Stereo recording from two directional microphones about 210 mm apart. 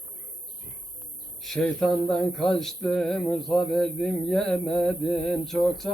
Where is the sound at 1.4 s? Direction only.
5° left (ahead or behind).